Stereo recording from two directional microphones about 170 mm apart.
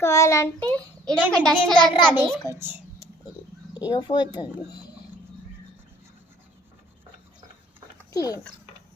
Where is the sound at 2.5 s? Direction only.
10° right (ahead or behind).